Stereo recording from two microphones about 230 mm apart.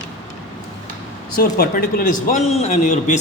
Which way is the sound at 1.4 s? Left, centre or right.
Left.